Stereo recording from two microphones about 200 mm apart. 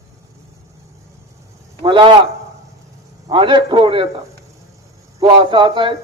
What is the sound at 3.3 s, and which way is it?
Speech, 25° right (ahead or behind).